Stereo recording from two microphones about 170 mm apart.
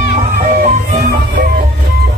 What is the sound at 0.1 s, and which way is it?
Music, 40° right (ahead or behind).